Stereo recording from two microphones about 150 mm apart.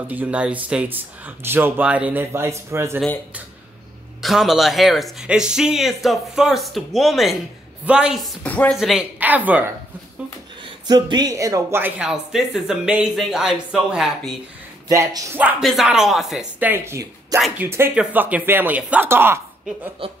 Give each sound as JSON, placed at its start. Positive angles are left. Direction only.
{"t": 0.0, "sound": "speech", "side_deg": -10}
{"t": 4.2, "sound": "speech", "side_deg": 0}
{"t": 8.5, "sound": "speech", "side_deg": 10}
{"t": 8.7, "sound": "speech", "side_deg": -5}
{"t": 10.9, "sound": "speech", "side_deg": -30}
{"t": 12.0, "sound": "speech", "side_deg": -5}
{"t": 14.9, "sound": "speech", "side_deg": -20}
{"t": 15.6, "sound": "speech", "side_deg": 0}
{"t": 20.0, "sound": "speech", "side_deg": -40}